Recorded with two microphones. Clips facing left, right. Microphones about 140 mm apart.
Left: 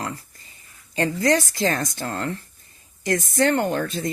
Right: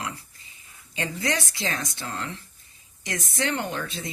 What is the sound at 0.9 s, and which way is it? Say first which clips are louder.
Speech: left 8 dB; 45° left (ahead or behind).